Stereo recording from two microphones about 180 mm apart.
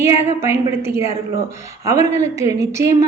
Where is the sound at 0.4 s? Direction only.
15° right (ahead or behind).